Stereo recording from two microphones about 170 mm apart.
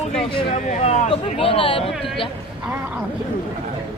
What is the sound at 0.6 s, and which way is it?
Speech, 45° left (ahead or behind).